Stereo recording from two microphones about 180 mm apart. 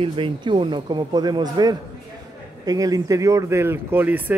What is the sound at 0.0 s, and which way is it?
A man's voice, 30° right (ahead or behind).